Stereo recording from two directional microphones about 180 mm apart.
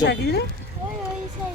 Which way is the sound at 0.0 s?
70° left (ahead or behind).